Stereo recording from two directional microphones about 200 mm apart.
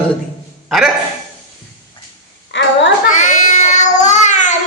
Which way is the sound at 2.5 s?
65° left (ahead or behind).